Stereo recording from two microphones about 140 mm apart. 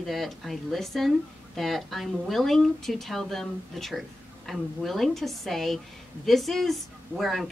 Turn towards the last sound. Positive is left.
turn(degrees=0)  # may be behind; listen again after turning